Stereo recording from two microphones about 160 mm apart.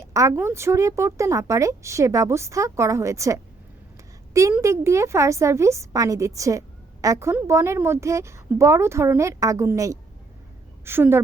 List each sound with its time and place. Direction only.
0.0 s a woman's voice: 20° right (ahead or behind)
4.5 s a woman's voice: 15° right (ahead or behind)